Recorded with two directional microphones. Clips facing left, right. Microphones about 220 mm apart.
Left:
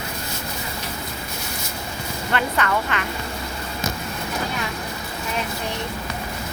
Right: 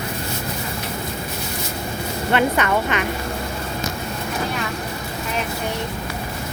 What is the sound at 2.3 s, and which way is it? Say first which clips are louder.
Speech: right 4 dB; 20° right (ahead or behind).